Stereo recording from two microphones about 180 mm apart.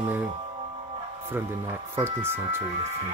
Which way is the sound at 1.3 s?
15° right (ahead or behind).